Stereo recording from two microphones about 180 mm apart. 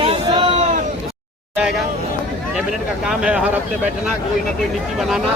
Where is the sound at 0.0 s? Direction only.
30° right (ahead or behind).